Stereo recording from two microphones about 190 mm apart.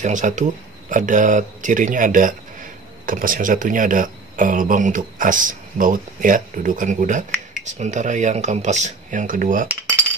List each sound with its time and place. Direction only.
0.0 s speech: 40° right (ahead or behind)